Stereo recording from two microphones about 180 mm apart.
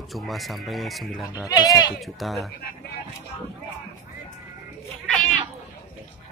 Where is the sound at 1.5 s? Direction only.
20° left (ahead or behind).